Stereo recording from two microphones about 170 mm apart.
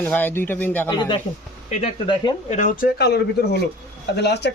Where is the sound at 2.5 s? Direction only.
50° left (ahead or behind).